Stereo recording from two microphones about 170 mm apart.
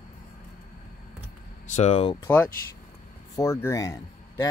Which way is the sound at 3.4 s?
15° left (ahead or behind).